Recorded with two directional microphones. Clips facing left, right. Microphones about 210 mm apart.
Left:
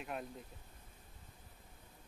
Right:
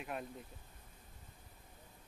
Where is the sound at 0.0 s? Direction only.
Centre (ahead or behind).